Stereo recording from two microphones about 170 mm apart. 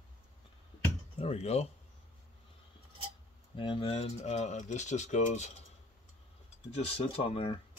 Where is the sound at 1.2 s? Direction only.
40° left (ahead or behind).